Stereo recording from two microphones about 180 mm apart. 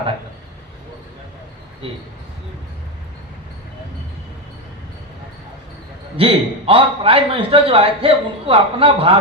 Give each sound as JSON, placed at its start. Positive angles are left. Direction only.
{"t": 6.1, "sound": "a man's voice", "side_deg": -30}